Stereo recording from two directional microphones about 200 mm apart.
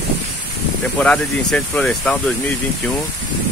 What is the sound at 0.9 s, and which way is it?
Speech, 5° left (ahead or behind).